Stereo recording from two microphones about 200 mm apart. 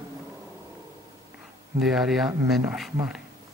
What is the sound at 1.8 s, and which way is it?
Speech, centre (ahead or behind).